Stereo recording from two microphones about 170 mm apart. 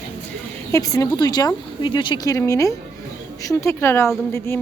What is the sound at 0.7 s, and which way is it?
A woman's voice, 20° left (ahead or behind).